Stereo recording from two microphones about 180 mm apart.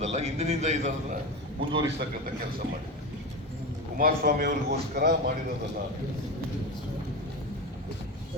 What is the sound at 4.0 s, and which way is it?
A man's voice, 55° right (ahead or behind).